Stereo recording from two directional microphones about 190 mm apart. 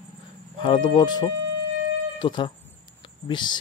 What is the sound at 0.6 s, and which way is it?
Speech, 25° left (ahead or behind).